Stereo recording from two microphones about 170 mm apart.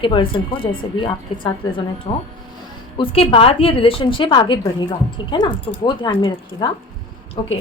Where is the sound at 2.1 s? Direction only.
40° left (ahead or behind).